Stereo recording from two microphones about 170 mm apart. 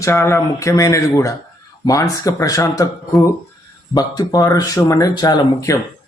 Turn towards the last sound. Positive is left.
turn(degrees=20)  # may be behind; listen again after turning